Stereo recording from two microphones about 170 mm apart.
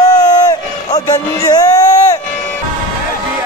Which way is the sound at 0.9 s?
25° left (ahead or behind).